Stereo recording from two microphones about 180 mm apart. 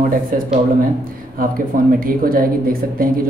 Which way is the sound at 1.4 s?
50° right (ahead or behind).